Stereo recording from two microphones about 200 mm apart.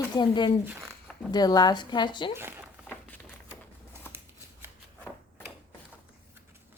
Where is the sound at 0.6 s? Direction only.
Centre (ahead or behind).